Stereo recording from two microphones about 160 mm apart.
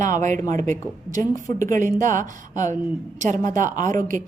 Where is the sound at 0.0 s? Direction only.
50° right (ahead or behind).